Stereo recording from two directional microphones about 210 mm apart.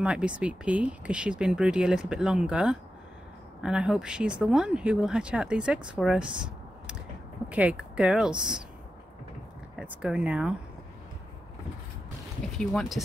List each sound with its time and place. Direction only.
0.0 s speech: 5° right (ahead or behind)
9.8 s speech: 5° right (ahead or behind)
12.5 s speech: centre (ahead or behind)